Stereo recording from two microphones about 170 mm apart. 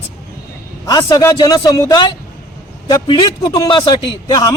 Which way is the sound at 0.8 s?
20° left (ahead or behind).